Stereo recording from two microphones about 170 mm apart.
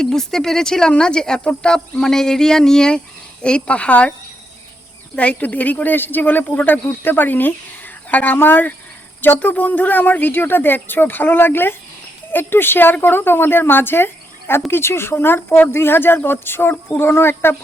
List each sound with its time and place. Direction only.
0.0 s speech: 5° left (ahead or behind)
5.1 s speech: 10° left (ahead or behind)